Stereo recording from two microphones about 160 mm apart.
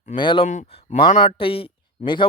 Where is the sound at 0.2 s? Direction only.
30° left (ahead or behind).